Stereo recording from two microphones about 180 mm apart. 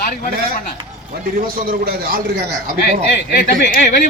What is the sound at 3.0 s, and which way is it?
Speech, 65° left (ahead or behind).